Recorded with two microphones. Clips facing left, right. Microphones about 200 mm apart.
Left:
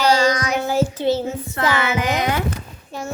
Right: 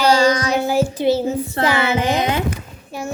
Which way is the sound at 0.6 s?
10° right (ahead or behind).